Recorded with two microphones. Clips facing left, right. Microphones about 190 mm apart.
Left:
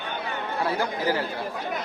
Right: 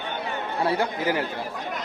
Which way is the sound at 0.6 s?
25° right (ahead or behind).